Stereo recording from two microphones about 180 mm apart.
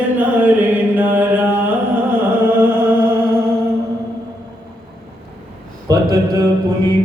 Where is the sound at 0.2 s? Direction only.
10° right (ahead or behind).